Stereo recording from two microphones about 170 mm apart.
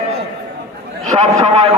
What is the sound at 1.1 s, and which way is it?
Speech, 25° right (ahead or behind).